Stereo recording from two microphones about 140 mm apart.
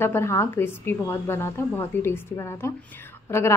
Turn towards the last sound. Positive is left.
turn(degrees=20)  # may be behind; listen again after turning